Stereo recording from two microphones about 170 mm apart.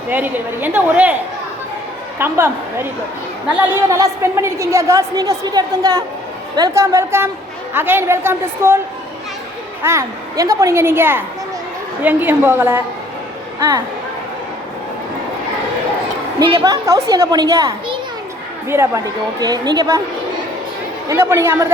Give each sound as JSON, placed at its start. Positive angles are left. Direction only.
{"t": 0.1, "sound": "a woman's voice", "side_deg": -10}
{"t": 2.1, "sound": "a woman's voice", "side_deg": -15}
{"t": 9.8, "sound": "a woman's voice", "side_deg": -15}
{"t": 16.4, "sound": "a woman's voice", "side_deg": -30}
{"t": 16.6, "sound": "a woman's voice", "side_deg": -20}
{"t": 21.1, "sound": "a woman's voice", "side_deg": -15}